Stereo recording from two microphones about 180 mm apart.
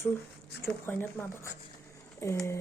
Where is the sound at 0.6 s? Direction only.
10° left (ahead or behind).